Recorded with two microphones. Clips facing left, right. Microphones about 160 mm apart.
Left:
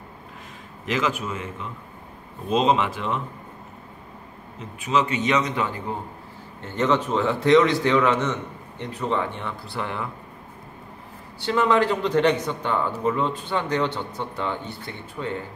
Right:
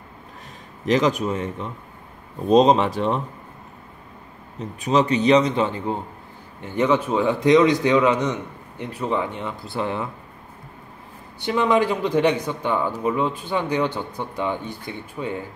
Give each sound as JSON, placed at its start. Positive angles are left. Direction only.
{"t": 0.8, "sound": "a man's voice", "side_deg": -40}
{"t": 4.6, "sound": "a man's voice", "side_deg": -40}
{"t": 6.6, "sound": "a man's voice", "side_deg": -15}
{"t": 11.4, "sound": "a man's voice", "side_deg": -15}